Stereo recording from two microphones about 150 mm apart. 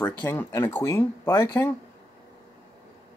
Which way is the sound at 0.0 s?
15° left (ahead or behind).